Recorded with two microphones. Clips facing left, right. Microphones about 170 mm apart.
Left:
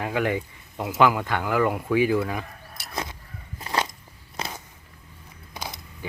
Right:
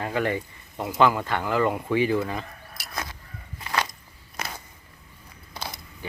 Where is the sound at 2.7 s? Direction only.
25° left (ahead or behind).